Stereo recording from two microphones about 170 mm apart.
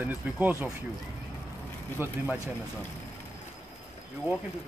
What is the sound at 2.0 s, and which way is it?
Speech, 15° right (ahead or behind).